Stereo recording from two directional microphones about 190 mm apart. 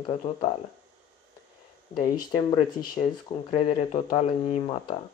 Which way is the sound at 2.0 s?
25° left (ahead or behind).